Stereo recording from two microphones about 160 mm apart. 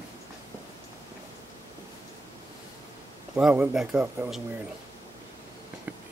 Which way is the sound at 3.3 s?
10° right (ahead or behind).